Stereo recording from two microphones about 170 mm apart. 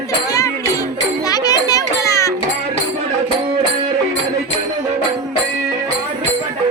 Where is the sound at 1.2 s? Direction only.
20° left (ahead or behind).